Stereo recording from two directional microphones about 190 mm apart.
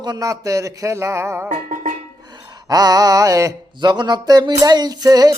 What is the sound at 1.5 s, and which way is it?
Music, 40° right (ahead or behind).